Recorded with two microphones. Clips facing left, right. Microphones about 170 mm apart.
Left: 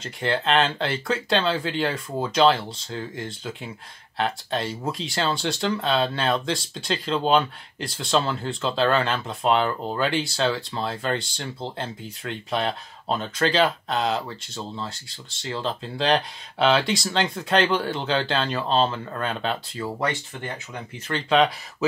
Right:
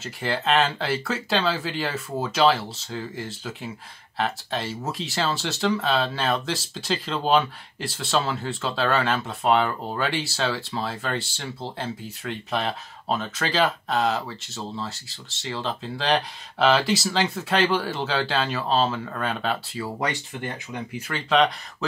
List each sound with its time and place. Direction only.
0.0 s speech: centre (ahead or behind)